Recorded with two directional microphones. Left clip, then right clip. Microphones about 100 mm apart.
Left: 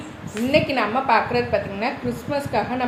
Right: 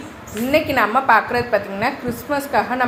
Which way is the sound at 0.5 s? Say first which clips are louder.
Right 4 dB; 30° right (ahead or behind).